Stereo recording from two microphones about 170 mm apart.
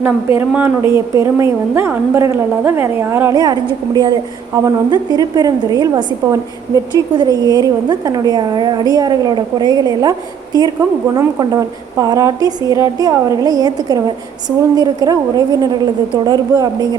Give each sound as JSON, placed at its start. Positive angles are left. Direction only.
{"t": 0.3, "sound": "a woman's voice", "side_deg": -15}